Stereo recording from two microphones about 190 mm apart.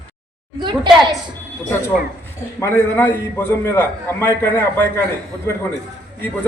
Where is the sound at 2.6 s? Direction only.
15° left (ahead or behind).